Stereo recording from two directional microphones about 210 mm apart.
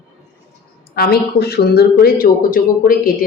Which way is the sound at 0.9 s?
50° left (ahead or behind).